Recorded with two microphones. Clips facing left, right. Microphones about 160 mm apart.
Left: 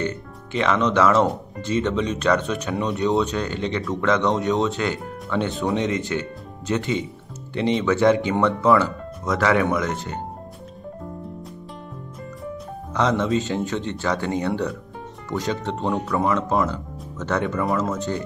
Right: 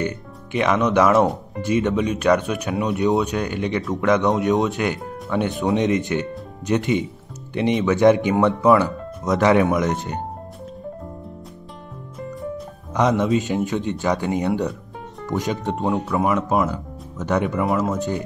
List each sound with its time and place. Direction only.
0.0 s speech: 15° right (ahead or behind)
12.9 s speech: 15° right (ahead or behind)